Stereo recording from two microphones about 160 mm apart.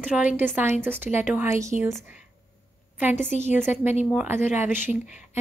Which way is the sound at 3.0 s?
10° right (ahead or behind).